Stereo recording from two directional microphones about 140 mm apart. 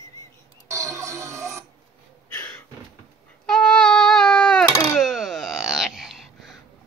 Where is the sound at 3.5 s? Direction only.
5° left (ahead or behind).